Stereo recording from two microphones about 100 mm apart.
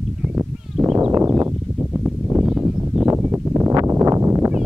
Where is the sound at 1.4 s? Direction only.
15° right (ahead or behind).